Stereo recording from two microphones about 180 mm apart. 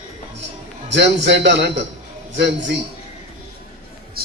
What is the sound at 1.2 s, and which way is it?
A man's voice, 75° right (ahead or behind).